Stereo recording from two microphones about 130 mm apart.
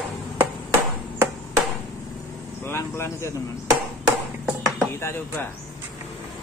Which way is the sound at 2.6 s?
20° left (ahead or behind).